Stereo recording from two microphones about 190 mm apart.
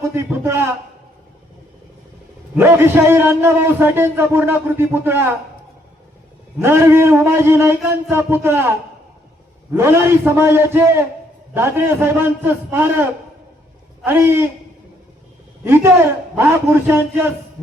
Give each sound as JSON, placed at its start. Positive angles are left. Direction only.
{"t": 0.1, "sound": "a sound", "side_deg": -15}
{"t": 2.6, "sound": "a man's voice", "side_deg": -10}
{"t": 6.6, "sound": "a man's voice", "side_deg": -15}
{"t": 9.7, "sound": "a man's voice", "side_deg": -15}
{"t": 15.6, "sound": "a man's voice", "side_deg": -10}